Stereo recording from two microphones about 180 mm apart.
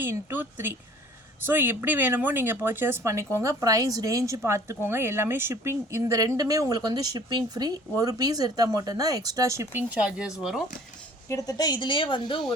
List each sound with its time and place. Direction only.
0.0 s speech: 10° right (ahead or behind)
10.0 s speech: 5° right (ahead or behind)
11.3 s a woman's voice: 20° left (ahead or behind)